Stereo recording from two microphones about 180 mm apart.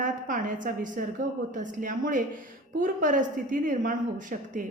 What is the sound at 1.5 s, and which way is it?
A woman's voice, 45° right (ahead or behind).